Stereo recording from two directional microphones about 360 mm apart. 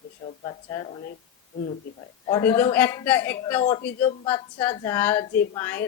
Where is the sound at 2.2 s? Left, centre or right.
Centre.